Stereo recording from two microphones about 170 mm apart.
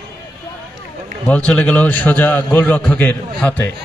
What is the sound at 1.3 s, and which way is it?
A man's voice, 5° left (ahead or behind).